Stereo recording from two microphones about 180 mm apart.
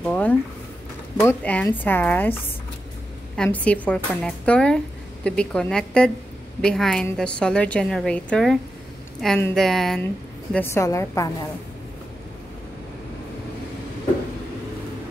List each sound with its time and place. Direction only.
0.0 s a sound: 5° left (ahead or behind)
1.2 s speech: 10° left (ahead or behind)
3.3 s a woman's voice: 5° left (ahead or behind)
10.5 s speech: 15° left (ahead or behind)